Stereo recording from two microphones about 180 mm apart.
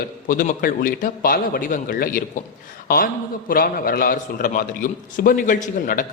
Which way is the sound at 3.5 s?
55° left (ahead or behind).